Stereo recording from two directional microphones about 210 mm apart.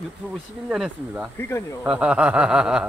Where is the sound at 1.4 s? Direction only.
10° left (ahead or behind).